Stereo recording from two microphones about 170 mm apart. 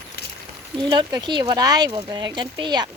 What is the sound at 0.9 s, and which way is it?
Speech, 25° right (ahead or behind).